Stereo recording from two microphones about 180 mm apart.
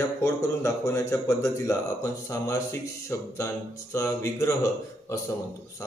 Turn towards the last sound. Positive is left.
turn(degrees=20)  # may be behind; listen again after turning